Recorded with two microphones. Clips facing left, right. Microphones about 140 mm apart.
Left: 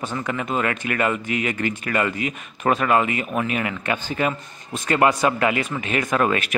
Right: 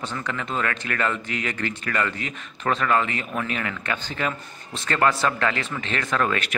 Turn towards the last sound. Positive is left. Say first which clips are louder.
# left 4 dB
turn(degrees=15)  # may be behind; listen again after turning